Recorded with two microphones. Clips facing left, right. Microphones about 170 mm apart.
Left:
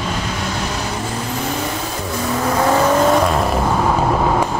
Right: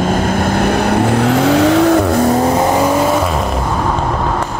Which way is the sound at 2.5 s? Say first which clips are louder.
Right 3 dB; 20° right (ahead or behind).